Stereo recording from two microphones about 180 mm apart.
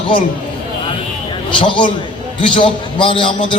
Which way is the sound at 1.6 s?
30° left (ahead or behind).